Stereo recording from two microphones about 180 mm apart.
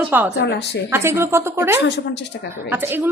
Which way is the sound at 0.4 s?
70° left (ahead or behind).